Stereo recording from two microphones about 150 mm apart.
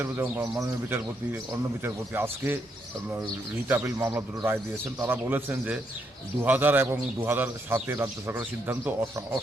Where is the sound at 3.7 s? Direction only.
15° right (ahead or behind).